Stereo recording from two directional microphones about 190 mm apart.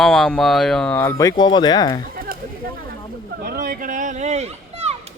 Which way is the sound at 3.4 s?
50° right (ahead or behind).